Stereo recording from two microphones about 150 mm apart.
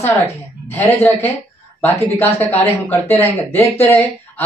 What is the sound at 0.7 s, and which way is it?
Speech, 15° left (ahead or behind).